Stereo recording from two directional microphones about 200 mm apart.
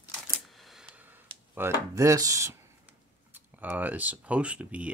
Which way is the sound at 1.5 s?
10° right (ahead or behind).